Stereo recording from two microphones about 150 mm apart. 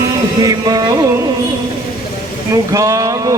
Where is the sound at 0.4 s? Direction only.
25° right (ahead or behind).